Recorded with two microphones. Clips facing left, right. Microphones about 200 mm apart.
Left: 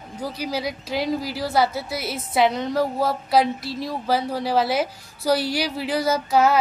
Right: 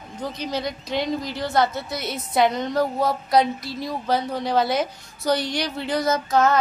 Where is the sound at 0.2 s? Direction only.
10° left (ahead or behind).